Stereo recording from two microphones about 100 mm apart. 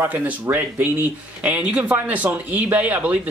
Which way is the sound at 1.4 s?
15° right (ahead or behind).